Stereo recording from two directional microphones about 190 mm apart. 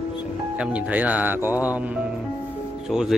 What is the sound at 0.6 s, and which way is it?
Speech, 5° right (ahead or behind).